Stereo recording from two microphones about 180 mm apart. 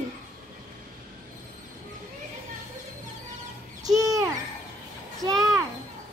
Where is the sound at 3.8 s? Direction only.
20° right (ahead or behind).